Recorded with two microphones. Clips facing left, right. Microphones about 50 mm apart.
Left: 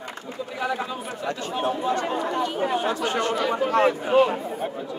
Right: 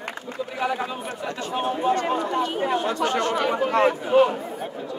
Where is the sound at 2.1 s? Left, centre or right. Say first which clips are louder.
Right 1 dB; centre.